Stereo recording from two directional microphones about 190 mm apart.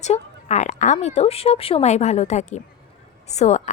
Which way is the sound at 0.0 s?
35° left (ahead or behind).